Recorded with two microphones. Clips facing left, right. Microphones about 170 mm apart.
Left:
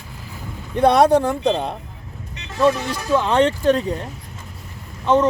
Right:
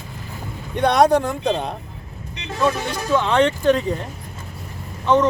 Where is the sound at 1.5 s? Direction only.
5° left (ahead or behind).